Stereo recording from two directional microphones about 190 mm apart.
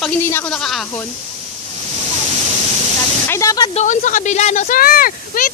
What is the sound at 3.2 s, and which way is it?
Spray, 15° left (ahead or behind).